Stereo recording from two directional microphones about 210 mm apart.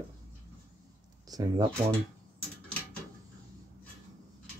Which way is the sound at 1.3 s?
20° right (ahead or behind).